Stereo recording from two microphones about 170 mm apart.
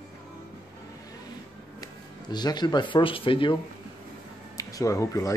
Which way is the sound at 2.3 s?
25° left (ahead or behind).